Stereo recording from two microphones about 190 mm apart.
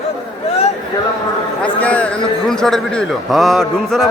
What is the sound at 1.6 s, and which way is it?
A man's voice, 5° left (ahead or behind).